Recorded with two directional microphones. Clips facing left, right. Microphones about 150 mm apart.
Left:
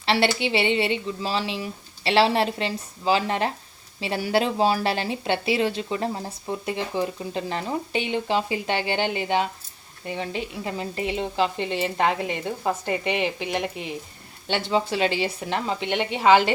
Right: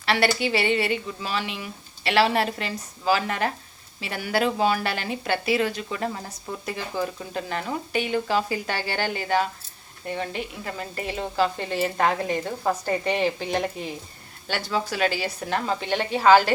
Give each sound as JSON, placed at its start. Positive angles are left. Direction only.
{"t": 0.0, "sound": "speech", "side_deg": 25}
{"t": 13.4, "sound": "speech", "side_deg": -40}
{"t": 14.4, "sound": "speech", "side_deg": 25}